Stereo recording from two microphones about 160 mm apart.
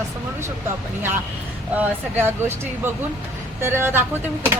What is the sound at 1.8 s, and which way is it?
Speech, 15° right (ahead or behind).